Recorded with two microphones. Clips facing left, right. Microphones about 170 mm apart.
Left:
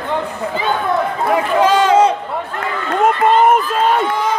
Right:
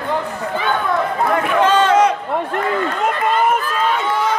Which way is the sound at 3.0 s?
50° left (ahead or behind).